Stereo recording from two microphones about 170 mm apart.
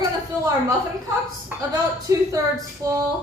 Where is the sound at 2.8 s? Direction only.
20° right (ahead or behind).